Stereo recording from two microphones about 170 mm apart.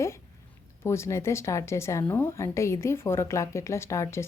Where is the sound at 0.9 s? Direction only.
15° left (ahead or behind).